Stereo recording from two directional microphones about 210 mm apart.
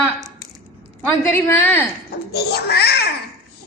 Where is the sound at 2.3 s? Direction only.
50° left (ahead or behind).